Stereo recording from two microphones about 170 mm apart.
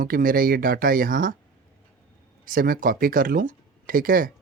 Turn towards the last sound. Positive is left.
turn(degrees=-55)  # may be behind; listen again after turning